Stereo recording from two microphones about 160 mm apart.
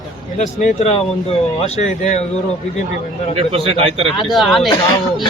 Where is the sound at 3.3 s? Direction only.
35° right (ahead or behind).